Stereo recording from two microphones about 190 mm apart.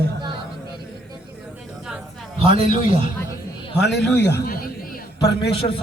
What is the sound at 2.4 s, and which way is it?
Speech, 30° right (ahead or behind).